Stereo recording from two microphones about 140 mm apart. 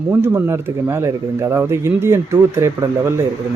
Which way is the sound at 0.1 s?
15° right (ahead or behind).